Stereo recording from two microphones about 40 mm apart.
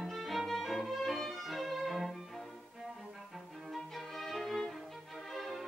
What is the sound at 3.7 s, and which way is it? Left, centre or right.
Music, centre.